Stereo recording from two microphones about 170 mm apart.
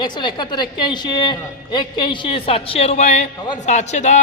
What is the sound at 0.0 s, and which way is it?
A woman's voice, 25° left (ahead or behind).